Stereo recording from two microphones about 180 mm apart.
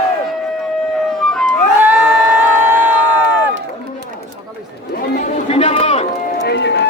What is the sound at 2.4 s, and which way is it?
Crowd, 10° right (ahead or behind).